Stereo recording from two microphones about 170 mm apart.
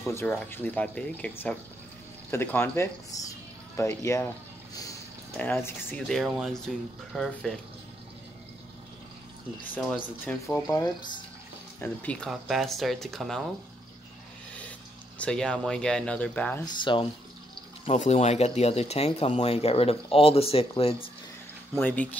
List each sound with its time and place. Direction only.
0.0 s speech: 15° left (ahead or behind)
5.4 s speech: 10° left (ahead or behind)
9.8 s speech: centre (ahead or behind)
10.5 s speech: 20° left (ahead or behind); by 13.4 s centre (ahead or behind)
15.1 s speech: 5° left (ahead or behind)
16.6 s speech: 30° left (ahead or behind)
17.8 s speech: 40° left (ahead or behind)
21.7 s speech: 10° left (ahead or behind)